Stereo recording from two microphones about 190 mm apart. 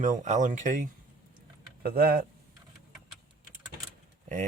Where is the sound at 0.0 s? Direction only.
40° right (ahead or behind).